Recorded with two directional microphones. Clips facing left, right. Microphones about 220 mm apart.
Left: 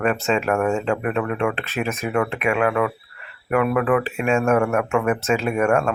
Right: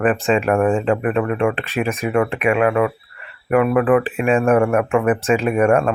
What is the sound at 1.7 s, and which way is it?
Speech, 15° right (ahead or behind).